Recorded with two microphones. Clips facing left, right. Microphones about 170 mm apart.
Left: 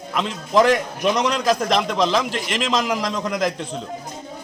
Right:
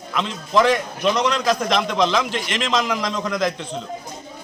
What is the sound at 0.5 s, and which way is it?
Speech, 40° left (ahead or behind).